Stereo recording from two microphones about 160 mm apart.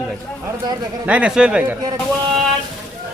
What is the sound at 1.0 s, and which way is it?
Speech, 10° right (ahead or behind).